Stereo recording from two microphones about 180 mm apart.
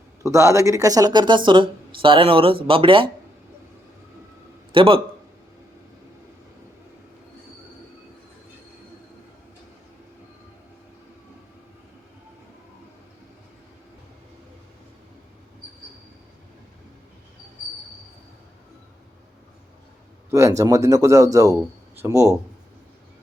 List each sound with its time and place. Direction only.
0.2 s speech: 15° right (ahead or behind)
4.7 s a man's voice: 30° right (ahead or behind)
20.3 s speech: 15° right (ahead or behind)